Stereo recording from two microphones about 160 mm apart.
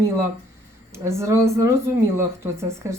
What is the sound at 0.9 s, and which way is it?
Speech, 15° right (ahead or behind).